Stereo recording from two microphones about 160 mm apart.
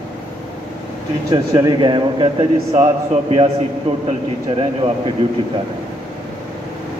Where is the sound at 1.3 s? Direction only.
25° right (ahead or behind).